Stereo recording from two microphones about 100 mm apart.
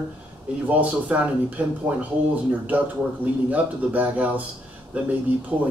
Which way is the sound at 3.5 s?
15° right (ahead or behind).